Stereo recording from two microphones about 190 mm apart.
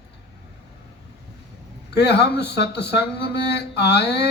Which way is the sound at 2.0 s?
60° left (ahead or behind).